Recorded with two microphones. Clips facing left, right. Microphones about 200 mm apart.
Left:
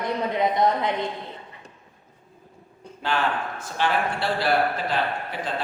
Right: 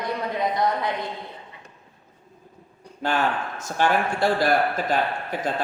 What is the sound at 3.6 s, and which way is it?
A man's voice, 45° right (ahead or behind).